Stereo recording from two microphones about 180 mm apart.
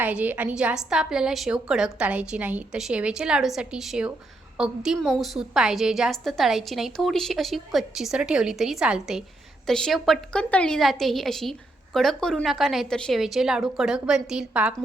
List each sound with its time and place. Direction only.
0.0 s a woman's voice: 10° right (ahead or behind)